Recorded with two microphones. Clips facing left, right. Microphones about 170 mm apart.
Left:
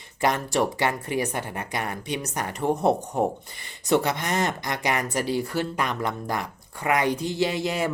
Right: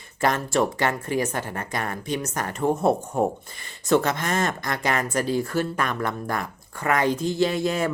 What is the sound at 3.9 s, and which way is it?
Speech, 15° left (ahead or behind).